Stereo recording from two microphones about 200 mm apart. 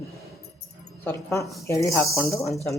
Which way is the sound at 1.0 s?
15° left (ahead or behind).